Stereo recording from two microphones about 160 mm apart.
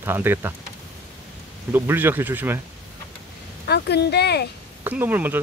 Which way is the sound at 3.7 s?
90° left.